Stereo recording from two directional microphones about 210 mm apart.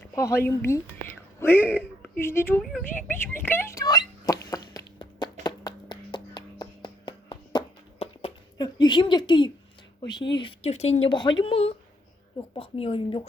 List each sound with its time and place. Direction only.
0.4 s a woman's voice: 10° left (ahead or behind)
4.4 s a sound: 20° left (ahead or behind)
10.0 s speech: 20° left (ahead or behind)